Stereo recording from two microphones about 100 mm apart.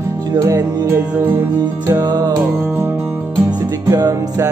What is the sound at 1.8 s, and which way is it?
Music, 40° right (ahead or behind).